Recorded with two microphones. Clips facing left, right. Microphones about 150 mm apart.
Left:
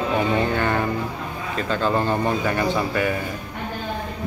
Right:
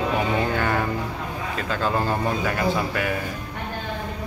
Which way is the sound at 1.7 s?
Centre (ahead or behind).